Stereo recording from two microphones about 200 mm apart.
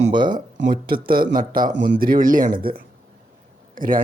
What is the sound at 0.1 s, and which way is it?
Speech, 20° right (ahead or behind).